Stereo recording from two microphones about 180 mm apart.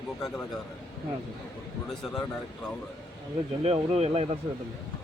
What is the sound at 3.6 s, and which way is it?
Speech, 35° right (ahead or behind).